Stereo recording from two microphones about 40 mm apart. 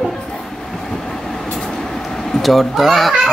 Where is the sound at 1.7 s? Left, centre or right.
Centre.